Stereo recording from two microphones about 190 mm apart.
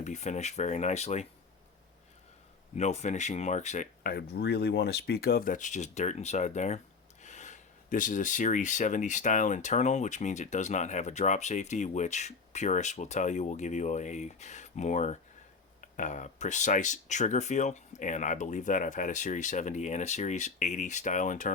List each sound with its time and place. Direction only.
0.0 s speech: 40° left (ahead or behind)
2.7 s speech: 35° left (ahead or behind)